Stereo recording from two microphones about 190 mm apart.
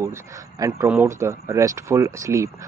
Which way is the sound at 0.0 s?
15° right (ahead or behind).